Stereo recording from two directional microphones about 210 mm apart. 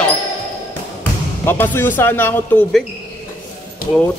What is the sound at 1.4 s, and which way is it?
Speech, 10° left (ahead or behind).